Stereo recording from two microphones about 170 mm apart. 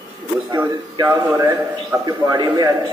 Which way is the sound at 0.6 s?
15° right (ahead or behind).